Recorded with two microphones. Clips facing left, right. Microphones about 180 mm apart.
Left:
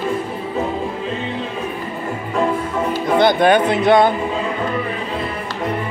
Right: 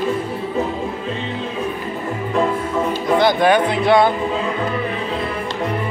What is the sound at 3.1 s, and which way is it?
Music, 20° left (ahead or behind).